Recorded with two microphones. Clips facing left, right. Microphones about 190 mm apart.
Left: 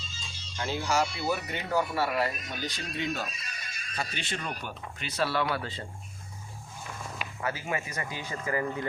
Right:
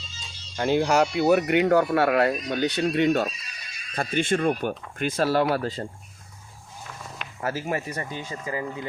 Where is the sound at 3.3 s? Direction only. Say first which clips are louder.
Even; 50° left (ahead or behind).